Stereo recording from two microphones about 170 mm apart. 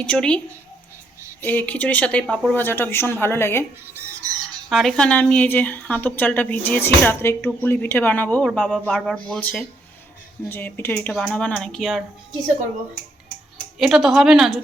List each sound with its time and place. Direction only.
0.0 s speech: 5° left (ahead or behind)
1.5 s speech: 10° left (ahead or behind)
3.9 s chicken: 20° right (ahead or behind)
4.7 s speech: centre (ahead or behind)
13.7 s speech: centre (ahead or behind)